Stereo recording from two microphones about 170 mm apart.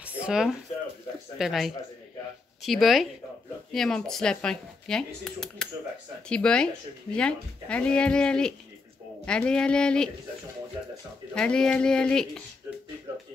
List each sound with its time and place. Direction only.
0.0 s a sound: 5° right (ahead or behind)
1.4 s speech: centre (ahead or behind)
11.3 s speech: 5° left (ahead or behind)